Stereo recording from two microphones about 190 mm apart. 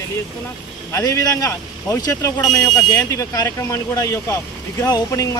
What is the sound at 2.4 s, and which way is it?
Speech, 5° left (ahead or behind).